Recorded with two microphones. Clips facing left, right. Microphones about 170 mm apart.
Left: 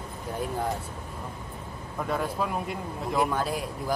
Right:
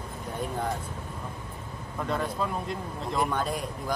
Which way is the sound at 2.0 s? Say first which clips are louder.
Left 1 dB; 5° left (ahead or behind).